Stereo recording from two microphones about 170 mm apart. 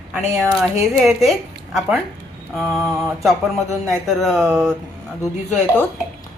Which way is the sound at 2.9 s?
15° right (ahead or behind).